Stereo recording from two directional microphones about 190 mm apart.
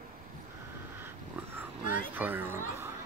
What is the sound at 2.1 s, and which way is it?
Speech, 10° right (ahead or behind).